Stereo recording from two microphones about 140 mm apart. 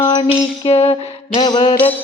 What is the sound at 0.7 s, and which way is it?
Music, 50° left (ahead or behind).